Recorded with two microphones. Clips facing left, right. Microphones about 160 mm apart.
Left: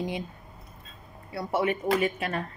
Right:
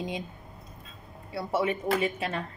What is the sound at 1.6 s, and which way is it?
Speech, 25° right (ahead or behind).